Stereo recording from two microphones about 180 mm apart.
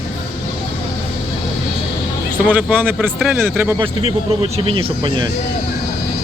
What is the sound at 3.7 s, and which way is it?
Speech, 30° right (ahead or behind).